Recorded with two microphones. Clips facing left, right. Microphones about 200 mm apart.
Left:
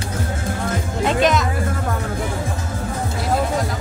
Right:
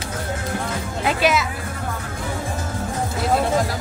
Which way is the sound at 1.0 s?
5° right (ahead or behind).